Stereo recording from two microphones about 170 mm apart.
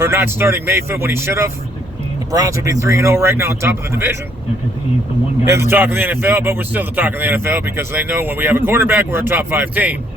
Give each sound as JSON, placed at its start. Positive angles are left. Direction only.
{"t": 0.0, "sound": "a man's voice", "side_deg": -15}
{"t": 5.5, "sound": "a man's voice", "side_deg": -15}